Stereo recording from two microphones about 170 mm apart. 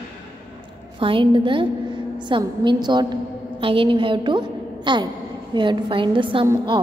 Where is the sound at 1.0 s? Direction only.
30° right (ahead or behind).